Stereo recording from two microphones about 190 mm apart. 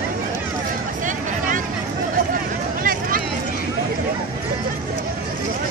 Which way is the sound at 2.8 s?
50° right (ahead or behind).